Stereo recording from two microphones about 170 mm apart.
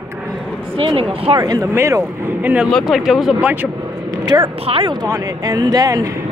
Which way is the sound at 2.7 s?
Centre (ahead or behind).